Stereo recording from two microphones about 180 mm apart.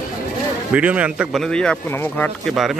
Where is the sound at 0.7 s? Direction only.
5° right (ahead or behind); by 2.3 s 10° left (ahead or behind).